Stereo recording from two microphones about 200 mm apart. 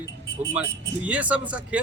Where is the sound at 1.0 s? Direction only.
5° right (ahead or behind).